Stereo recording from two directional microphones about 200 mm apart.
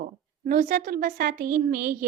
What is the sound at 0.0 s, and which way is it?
A woman's voice, 40° right (ahead or behind).